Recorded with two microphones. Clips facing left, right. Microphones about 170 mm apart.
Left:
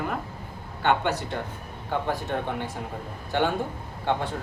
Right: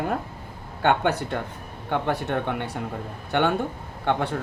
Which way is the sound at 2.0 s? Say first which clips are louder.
Right 4 dB; 70° right (ahead or behind).